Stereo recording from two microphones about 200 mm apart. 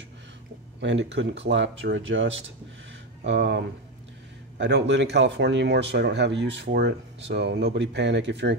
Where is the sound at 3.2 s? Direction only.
55° right (ahead or behind).